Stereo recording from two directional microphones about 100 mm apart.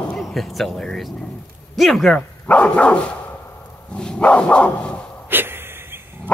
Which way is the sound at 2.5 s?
15° left (ahead or behind).